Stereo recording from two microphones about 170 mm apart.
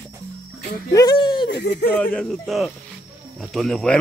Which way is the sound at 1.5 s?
90° left.